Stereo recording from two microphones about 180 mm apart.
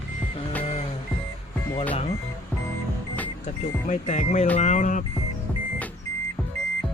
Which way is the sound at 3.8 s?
45° left (ahead or behind).